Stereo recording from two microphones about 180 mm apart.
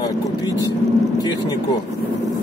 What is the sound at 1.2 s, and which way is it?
Speech, 25° left (ahead or behind).